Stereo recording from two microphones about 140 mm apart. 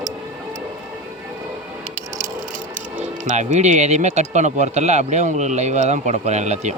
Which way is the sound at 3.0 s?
55° right (ahead or behind).